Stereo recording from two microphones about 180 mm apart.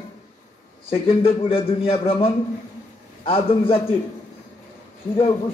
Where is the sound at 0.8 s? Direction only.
30° left (ahead or behind).